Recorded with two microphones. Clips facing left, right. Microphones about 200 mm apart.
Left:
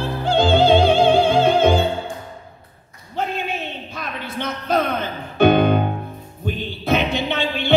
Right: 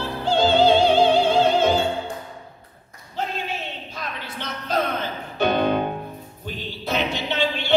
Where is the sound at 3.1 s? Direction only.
55° left (ahead or behind).